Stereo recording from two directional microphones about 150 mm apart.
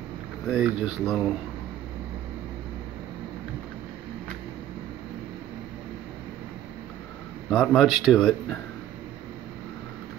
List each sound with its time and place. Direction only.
0.5 s a man's voice: 5° right (ahead or behind)
7.4 s a man's voice: 5° left (ahead or behind)